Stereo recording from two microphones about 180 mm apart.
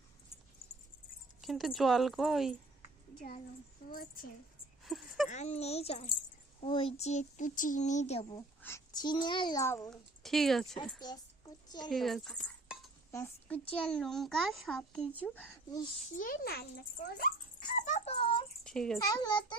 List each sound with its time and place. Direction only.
1.4 s a child's voice: centre (ahead or behind)
2.8 s a sound: 40° left (ahead or behind)
3.8 s speech: 50° left (ahead or behind)
4.8 s a sound: centre (ahead or behind)
5.3 s speech: 35° left (ahead or behind)
8.6 s a child's voice: 15° left (ahead or behind)
10.2 s a child's voice: centre (ahead or behind)
11.0 s a sound: 20° left (ahead or behind)
11.9 s cutlery: centre (ahead or behind)
13.1 s a child's voice: 15° left (ahead or behind)
16.1 s speech: 50° left (ahead or behind); by 18.4 s 30° left (ahead or behind)
18.6 s a sound: 5° left (ahead or behind)
18.9 s a child's voice: 20° left (ahead or behind)